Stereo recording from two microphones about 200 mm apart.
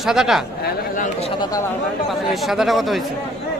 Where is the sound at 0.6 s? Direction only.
40° left (ahead or behind).